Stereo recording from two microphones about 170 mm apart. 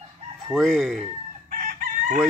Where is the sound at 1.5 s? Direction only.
50° right (ahead or behind).